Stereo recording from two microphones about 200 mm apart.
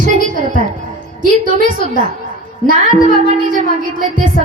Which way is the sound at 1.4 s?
40° right (ahead or behind).